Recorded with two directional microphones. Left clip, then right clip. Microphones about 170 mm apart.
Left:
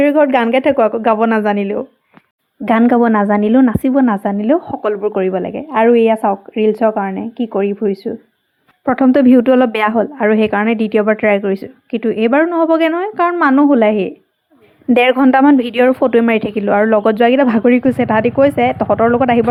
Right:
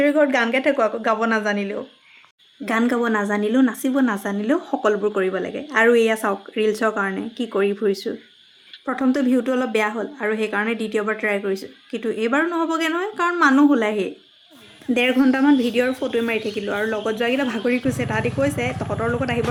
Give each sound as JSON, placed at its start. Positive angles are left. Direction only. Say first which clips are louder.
{"t": 0.0, "sound": "a woman's voice", "louder": "left 6 dB", "side_deg": 35}
{"t": 2.6, "sound": "a woman's voice", "louder": "left 9 dB", "side_deg": 50}
{"t": 8.8, "sound": "a woman's voice", "louder": "left 10 dB", "side_deg": 45}
{"t": 9.9, "sound": "a woman's voice", "louder": "left 11 dB", "side_deg": 35}
{"t": 18.9, "sound": "a woman's voice", "louder": "left 13 dB", "side_deg": 35}
{"t": 19.1, "sound": "a woman's voice", "louder": "left 11 dB", "side_deg": 50}